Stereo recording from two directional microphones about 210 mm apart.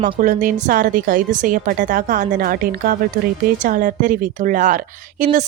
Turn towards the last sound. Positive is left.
turn(degrees=-40)  # may be behind; listen again after turning